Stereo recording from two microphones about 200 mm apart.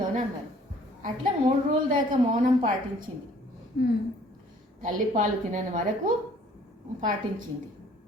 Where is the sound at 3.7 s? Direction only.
50° left (ahead or behind).